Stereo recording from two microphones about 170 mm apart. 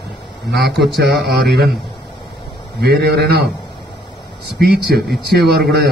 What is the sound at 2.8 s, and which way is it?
Speech, 70° right (ahead or behind).